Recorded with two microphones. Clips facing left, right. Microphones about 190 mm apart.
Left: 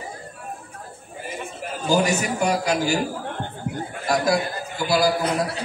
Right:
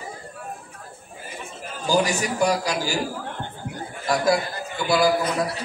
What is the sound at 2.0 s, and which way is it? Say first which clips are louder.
Speech: even; 35° right (ahead or behind).